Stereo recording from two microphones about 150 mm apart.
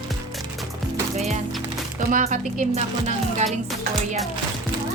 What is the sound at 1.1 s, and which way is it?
Music, 45° right (ahead or behind).